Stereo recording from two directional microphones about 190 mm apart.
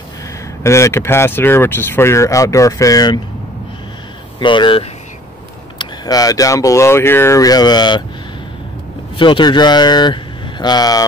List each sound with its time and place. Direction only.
0.7 s speech: 15° left (ahead or behind)
4.4 s speech: 25° left (ahead or behind)
9.1 s speech: 25° left (ahead or behind)